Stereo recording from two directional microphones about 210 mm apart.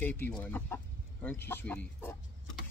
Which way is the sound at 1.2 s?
10° left (ahead or behind).